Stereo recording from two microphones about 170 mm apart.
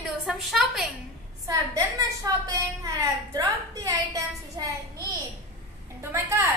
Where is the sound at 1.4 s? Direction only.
20° right (ahead or behind).